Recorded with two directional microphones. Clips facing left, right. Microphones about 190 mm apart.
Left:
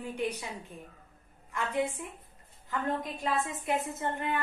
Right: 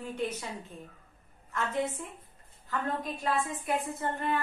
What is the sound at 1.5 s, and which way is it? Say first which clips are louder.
Speech: even; 15° left (ahead or behind).